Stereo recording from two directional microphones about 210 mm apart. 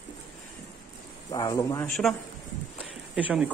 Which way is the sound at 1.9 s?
Centre (ahead or behind).